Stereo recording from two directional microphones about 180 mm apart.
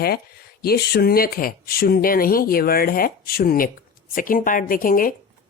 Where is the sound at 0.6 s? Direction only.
60° left (ahead or behind).